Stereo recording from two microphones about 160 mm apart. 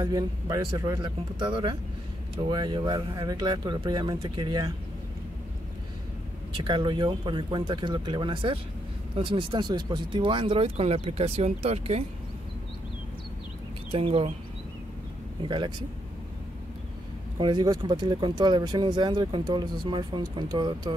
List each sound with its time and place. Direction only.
0.0 s speech: 20° right (ahead or behind)
6.5 s speech: 30° right (ahead or behind)
13.9 s speech: 35° right (ahead or behind)
15.4 s speech: 30° right (ahead or behind)
17.4 s speech: 30° right (ahead or behind)